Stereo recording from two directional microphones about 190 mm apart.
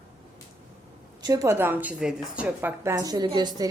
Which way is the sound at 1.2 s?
15° right (ahead or behind).